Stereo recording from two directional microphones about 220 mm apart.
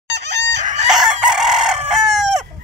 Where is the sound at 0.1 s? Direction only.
50° right (ahead or behind).